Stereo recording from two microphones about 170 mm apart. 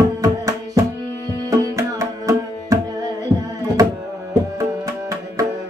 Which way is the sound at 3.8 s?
20° right (ahead or behind).